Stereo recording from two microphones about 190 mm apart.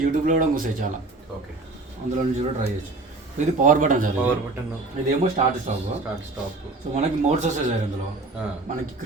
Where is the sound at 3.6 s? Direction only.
40° right (ahead or behind).